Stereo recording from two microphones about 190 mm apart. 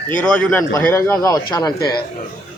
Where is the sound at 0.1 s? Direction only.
5° left (ahead or behind).